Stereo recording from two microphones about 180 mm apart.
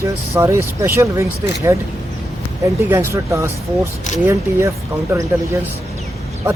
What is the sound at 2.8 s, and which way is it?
Speech, 15° right (ahead or behind).